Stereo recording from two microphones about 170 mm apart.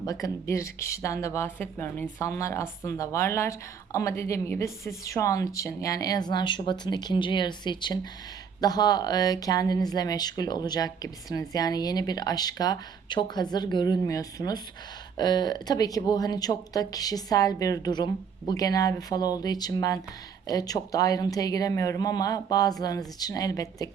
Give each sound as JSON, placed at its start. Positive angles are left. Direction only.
{"t": 0.0, "sound": "speech", "side_deg": 20}